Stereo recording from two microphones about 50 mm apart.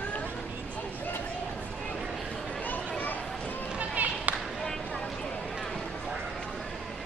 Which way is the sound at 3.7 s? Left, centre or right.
Right.